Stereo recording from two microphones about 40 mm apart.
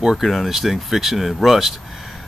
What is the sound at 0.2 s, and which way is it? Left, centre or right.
Speech, centre.